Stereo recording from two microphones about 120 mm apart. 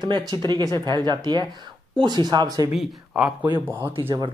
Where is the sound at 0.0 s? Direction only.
40° right (ahead or behind).